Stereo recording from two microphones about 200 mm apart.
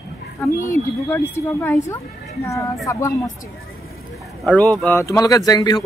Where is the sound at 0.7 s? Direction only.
10° left (ahead or behind).